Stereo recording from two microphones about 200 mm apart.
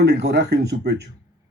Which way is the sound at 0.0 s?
55° right (ahead or behind).